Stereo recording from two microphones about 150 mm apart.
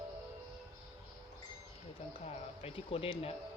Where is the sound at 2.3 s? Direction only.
40° left (ahead or behind).